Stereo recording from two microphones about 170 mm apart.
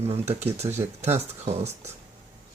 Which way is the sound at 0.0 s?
40° right (ahead or behind).